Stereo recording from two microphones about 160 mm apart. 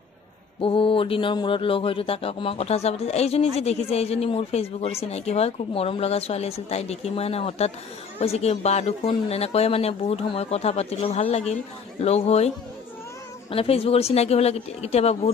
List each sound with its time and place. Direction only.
0.6 s speech: 35° left (ahead or behind)